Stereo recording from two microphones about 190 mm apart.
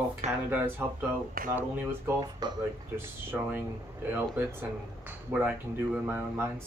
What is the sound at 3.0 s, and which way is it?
Speech, 10° right (ahead or behind).